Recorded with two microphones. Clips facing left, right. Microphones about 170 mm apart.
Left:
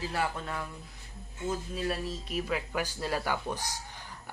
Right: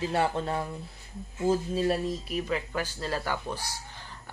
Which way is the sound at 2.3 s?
5° left (ahead or behind).